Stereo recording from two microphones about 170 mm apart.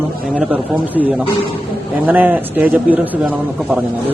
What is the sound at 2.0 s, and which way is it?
Speech, 10° right (ahead or behind).